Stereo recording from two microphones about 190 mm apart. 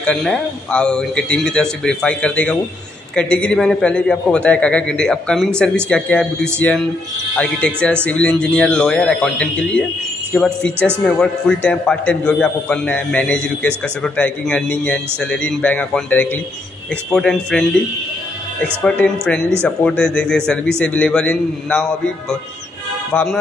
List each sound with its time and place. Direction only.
0.0 s a man's voice: 5° left (ahead or behind)
18.8 s a man's voice: 5° left (ahead or behind)
23.1 s a man's voice: centre (ahead or behind)